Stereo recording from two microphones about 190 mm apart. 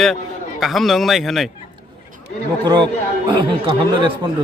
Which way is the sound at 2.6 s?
25° right (ahead or behind).